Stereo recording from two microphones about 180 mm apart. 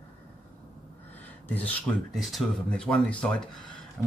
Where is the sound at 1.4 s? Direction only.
10° left (ahead or behind).